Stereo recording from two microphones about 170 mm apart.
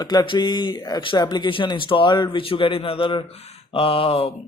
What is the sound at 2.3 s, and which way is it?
Speech, 30° left (ahead or behind).